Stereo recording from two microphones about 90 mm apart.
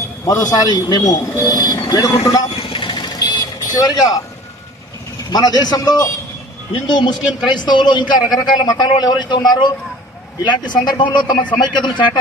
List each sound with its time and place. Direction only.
0.3 s a man's voice: 40° left (ahead or behind)
1.1 s speech: 35° left (ahead or behind)
1.5 s speech: 45° left (ahead or behind)
2.5 s vehicle: 80° left; by 4.2 s 45° left (ahead or behind)
5.3 s a man's voice: 50° left (ahead or behind)
6.9 s a man's voice: 55° left (ahead or behind)